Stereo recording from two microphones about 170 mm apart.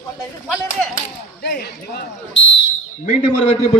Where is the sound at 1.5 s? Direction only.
65° left (ahead or behind).